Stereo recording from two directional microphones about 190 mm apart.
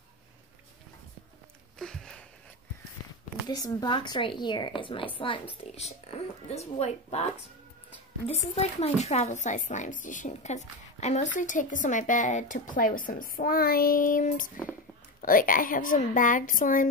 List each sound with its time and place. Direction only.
1.8 s a sound: 5° left (ahead or behind)
3.4 s speech: 20° left (ahead or behind)
8.3 s speech: 35° left (ahead or behind)